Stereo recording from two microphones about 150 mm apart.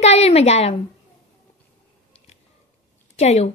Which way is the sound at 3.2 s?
45° left (ahead or behind).